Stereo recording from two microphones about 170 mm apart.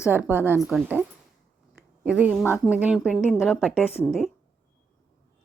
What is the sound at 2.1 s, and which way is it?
A woman's voice, 5° right (ahead or behind).